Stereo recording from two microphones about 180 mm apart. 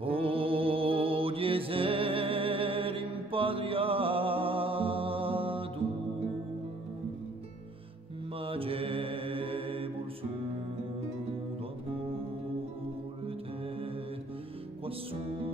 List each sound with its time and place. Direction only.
0.0 s music: 30° right (ahead or behind)
8.4 s mantra: 30° right (ahead or behind)